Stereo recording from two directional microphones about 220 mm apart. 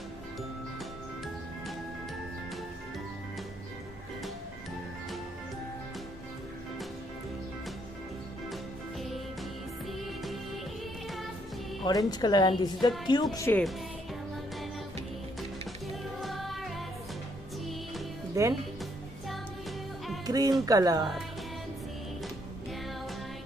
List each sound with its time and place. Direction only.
11.8 s a woman's voice: 15° left (ahead or behind)
16.2 s music: centre (ahead or behind)
18.4 s speech: 15° right (ahead or behind)
20.2 s music: 15° right (ahead or behind)
20.6 s speech: 15° right (ahead or behind)